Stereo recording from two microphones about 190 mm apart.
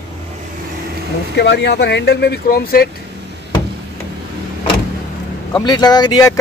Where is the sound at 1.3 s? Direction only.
65° left (ahead or behind).